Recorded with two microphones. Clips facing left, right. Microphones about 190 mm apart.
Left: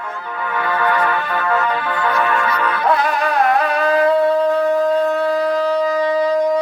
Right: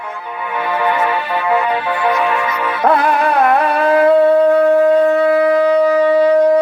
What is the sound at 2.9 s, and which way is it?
Shofar, 60° right (ahead or behind).